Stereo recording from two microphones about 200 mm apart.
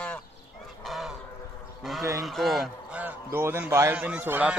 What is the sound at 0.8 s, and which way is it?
Goose, centre (ahead or behind).